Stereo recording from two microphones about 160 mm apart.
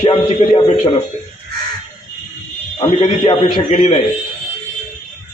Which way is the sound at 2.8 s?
35° left (ahead or behind).